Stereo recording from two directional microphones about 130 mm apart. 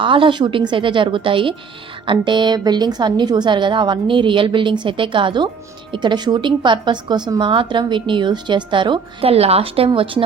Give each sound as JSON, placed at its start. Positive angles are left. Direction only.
{"t": 0.0, "sound": "a woman's voice", "side_deg": -40}